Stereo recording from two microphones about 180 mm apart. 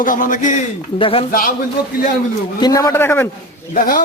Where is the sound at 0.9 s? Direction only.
30° left (ahead or behind).